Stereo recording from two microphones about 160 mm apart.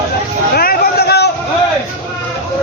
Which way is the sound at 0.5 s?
70° left (ahead or behind).